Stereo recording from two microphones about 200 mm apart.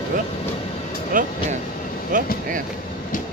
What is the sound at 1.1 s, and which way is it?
Music, 45° right (ahead or behind).